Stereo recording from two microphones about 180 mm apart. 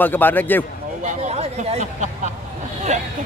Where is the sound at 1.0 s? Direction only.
40° right (ahead or behind).